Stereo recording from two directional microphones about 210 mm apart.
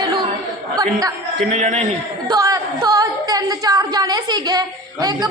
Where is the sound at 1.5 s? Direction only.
35° right (ahead or behind).